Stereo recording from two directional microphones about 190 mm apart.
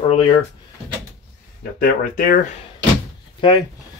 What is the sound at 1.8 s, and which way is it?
Speech, 45° left (ahead or behind).